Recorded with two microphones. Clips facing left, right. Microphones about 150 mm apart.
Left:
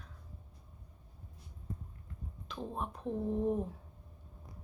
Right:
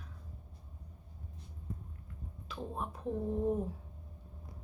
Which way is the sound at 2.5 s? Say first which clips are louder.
Left 1 dB; centre (ahead or behind).